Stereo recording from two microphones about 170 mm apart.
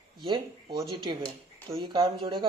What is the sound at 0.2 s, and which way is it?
Speech, 25° right (ahead or behind).